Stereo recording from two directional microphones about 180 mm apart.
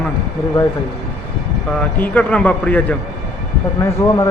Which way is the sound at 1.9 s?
10° left (ahead or behind).